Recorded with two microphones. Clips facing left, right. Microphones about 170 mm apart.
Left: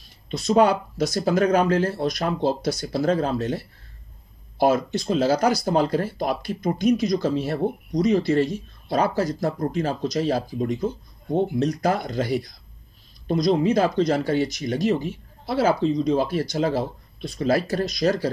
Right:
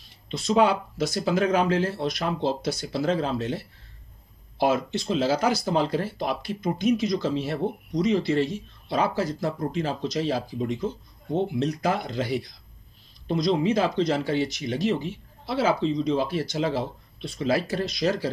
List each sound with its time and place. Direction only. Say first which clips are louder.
0.3 s speech: left 3 dB; 40° left (ahead or behind)